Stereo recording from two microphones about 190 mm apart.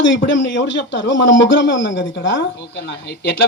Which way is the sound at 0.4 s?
70° left (ahead or behind).